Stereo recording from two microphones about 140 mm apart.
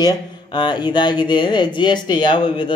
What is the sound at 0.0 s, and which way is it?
Speech, 35° left (ahead or behind).